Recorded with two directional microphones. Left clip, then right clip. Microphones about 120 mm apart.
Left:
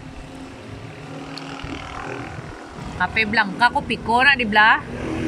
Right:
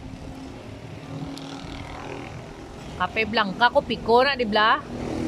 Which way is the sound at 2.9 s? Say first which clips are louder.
Left 4 dB; 15° right (ahead or behind).